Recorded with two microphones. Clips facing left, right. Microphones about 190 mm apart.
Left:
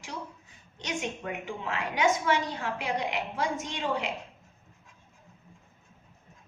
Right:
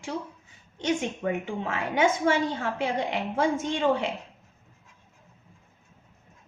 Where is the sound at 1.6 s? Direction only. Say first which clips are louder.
Right 2 dB; 50° right (ahead or behind).